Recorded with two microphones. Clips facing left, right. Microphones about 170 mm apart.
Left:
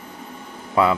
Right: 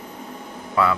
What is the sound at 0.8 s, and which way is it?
Speech, 20° left (ahead or behind).